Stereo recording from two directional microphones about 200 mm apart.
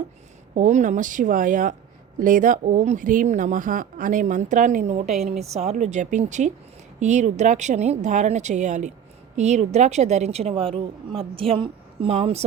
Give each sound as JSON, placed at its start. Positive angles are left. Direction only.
{"t": 0.5, "sound": "a woman's voice", "side_deg": -35}